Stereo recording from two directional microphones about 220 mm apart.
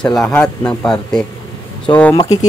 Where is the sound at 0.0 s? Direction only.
5° left (ahead or behind).